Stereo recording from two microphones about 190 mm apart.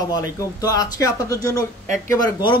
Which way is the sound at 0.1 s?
20° left (ahead or behind).